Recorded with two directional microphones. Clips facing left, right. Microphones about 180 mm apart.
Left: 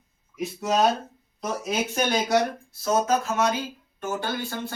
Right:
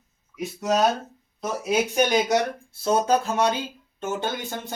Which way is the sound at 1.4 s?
10° right (ahead or behind).